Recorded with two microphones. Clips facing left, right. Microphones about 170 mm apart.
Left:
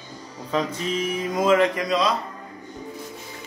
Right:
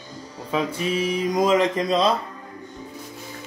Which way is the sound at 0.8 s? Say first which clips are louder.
Right 3 dB; 10° right (ahead or behind).